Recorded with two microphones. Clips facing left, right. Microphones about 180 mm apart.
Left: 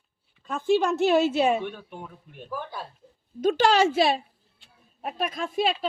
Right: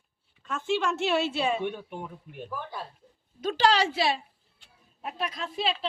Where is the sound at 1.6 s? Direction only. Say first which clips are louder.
Right 3 dB; 15° right (ahead or behind).